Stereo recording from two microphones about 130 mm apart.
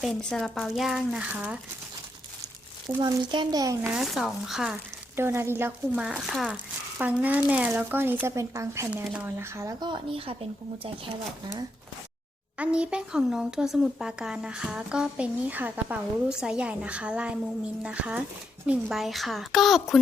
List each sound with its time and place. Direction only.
0.0 s speech: 5° left (ahead or behind)
3.0 s a child's voice: 30° right (ahead or behind)
3.8 s speech: 5° right (ahead or behind)
5.1 s speech: 20° right (ahead or behind)
6.0 s a child's voice: 5° right (ahead or behind); by 9.7 s 20° right (ahead or behind)
9.8 s speech: 40° right (ahead or behind)
12.5 s speech: 10° right (ahead or behind)